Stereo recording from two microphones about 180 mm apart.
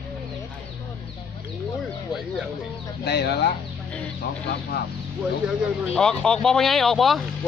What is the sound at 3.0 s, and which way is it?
Speech, 70° left (ahead or behind).